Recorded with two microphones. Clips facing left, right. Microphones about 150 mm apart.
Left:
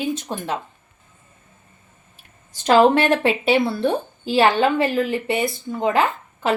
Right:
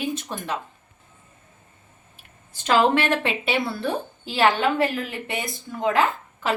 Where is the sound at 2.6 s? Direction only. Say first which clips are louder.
Left 5 dB; 40° left (ahead or behind).